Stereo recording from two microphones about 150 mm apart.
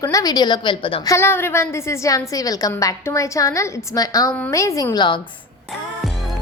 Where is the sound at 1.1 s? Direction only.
15° left (ahead or behind).